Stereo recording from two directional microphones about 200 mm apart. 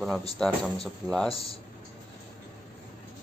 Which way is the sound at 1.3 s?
30° left (ahead or behind).